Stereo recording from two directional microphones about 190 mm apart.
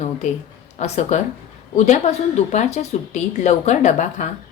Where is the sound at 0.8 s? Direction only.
35° left (ahead or behind).